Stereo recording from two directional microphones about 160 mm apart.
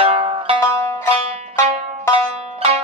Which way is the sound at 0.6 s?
20° left (ahead or behind).